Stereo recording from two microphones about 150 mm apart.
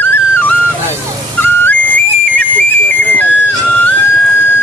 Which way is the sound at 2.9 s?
10° left (ahead or behind).